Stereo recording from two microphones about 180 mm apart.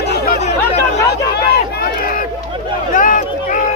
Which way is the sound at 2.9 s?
45° left (ahead or behind).